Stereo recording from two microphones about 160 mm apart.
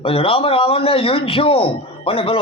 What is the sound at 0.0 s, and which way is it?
A man's voice, 35° left (ahead or behind).